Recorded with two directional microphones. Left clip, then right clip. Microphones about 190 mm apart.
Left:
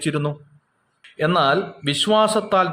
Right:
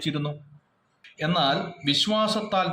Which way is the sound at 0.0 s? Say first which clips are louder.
Left 6 dB; 50° left (ahead or behind).